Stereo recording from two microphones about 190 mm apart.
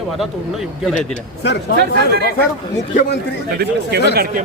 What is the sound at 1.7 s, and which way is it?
Speech, 55° right (ahead or behind).